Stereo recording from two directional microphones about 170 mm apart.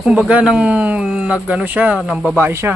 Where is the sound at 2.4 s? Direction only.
15° right (ahead or behind).